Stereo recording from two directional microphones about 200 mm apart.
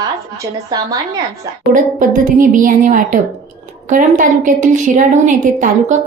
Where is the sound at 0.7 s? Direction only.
20° right (ahead or behind).